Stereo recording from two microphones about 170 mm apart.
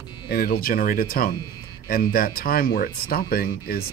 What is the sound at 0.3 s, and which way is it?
Speech, 60° left (ahead or behind).